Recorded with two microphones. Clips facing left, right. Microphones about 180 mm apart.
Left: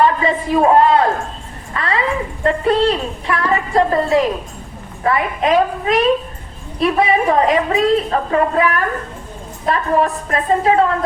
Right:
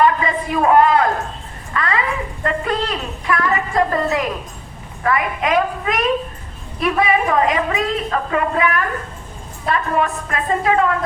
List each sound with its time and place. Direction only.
0.0 s a woman's voice: 30° left (ahead or behind)